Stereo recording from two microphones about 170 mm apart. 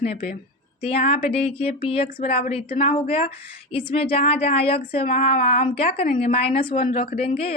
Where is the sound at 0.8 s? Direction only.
35° left (ahead or behind).